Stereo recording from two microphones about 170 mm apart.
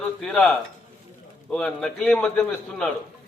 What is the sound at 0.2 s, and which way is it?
A man's voice, 5° left (ahead or behind).